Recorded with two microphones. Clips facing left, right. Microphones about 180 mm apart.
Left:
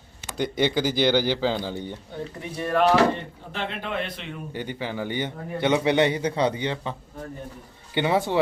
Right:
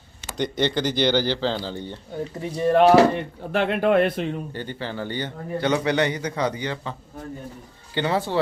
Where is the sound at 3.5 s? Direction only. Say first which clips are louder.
Right 11 dB; 55° right (ahead or behind).